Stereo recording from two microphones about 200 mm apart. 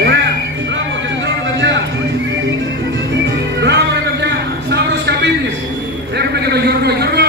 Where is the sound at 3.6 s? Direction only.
55° right (ahead or behind).